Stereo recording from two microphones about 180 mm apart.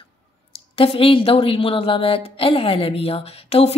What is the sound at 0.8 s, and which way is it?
A woman's voice, 30° left (ahead or behind).